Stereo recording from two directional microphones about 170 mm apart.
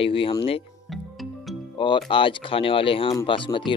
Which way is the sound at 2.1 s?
30° left (ahead or behind).